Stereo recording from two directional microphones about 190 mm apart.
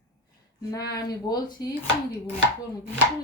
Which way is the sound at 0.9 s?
20° left (ahead or behind).